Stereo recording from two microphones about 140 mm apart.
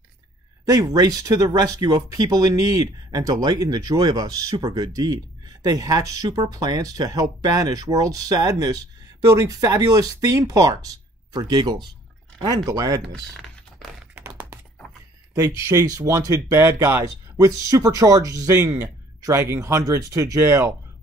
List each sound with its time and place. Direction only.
0.7 s speech: 25° right (ahead or behind)
14.1 s computer keyboard: 15° right (ahead or behind)
15.3 s speech: 20° right (ahead or behind)